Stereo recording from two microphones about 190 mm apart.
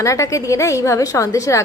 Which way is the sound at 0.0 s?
15° left (ahead or behind).